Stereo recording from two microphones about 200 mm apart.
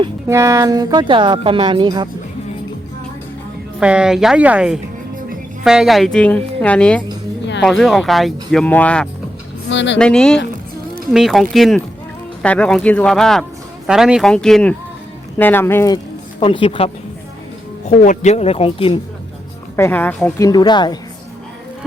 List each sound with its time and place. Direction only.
0.3 s speech: 15° right (ahead or behind)
3.8 s speech: 5° right (ahead or behind)
9.6 s speech: 65° left (ahead or behind)
10.0 s speech: 5° left (ahead or behind)
16.4 s speech: 25° left (ahead or behind)
19.7 s speech: 10° left (ahead or behind)
20.5 s speech: 20° left (ahead or behind)